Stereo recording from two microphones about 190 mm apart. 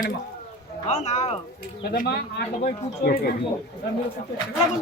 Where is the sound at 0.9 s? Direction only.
40° left (ahead or behind).